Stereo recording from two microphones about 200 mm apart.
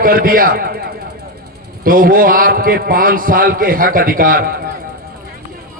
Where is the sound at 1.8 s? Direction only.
45° right (ahead or behind).